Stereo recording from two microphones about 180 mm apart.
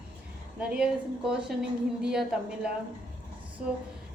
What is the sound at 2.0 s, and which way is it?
Speech, 5° right (ahead or behind).